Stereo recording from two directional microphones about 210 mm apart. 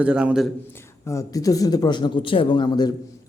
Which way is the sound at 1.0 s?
15° left (ahead or behind).